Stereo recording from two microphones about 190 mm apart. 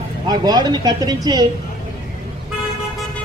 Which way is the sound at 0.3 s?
20° right (ahead or behind).